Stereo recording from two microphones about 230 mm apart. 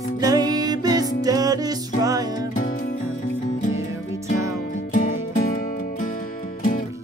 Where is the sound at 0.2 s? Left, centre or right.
Centre.